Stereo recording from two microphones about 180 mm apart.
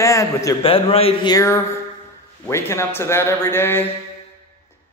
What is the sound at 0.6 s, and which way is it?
Speech, 30° left (ahead or behind).